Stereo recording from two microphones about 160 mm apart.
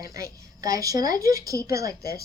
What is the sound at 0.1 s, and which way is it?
A woman's voice, 20° right (ahead or behind).